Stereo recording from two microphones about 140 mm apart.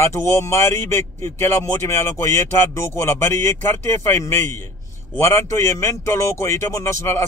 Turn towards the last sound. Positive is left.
turn(degrees=20)  # may be behind; listen again after turning